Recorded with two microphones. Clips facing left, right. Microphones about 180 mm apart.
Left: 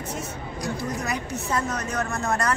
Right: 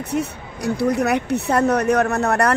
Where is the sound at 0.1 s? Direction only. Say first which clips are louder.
Right 8 dB; 65° right (ahead or behind).